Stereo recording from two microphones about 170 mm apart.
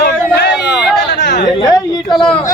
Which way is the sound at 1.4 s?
25° left (ahead or behind).